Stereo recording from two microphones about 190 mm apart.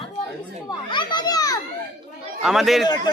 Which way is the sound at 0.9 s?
25° left (ahead or behind).